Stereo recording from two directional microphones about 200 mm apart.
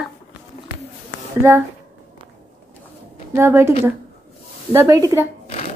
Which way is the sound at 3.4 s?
10° right (ahead or behind).